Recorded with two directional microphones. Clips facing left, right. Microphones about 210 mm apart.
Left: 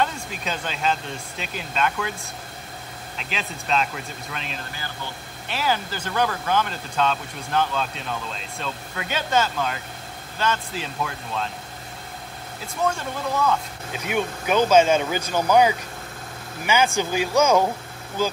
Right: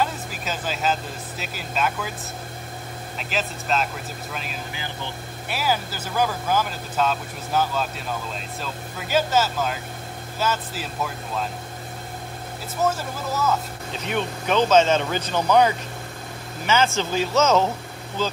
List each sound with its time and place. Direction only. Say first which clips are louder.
0.0 s speech: even; 5° right (ahead or behind)
3.2 s speech: right 4 dB; centre (ahead or behind)
12.8 s speech: even; 5° right (ahead or behind)
13.9 s speech: left 1 dB; 10° left (ahead or behind)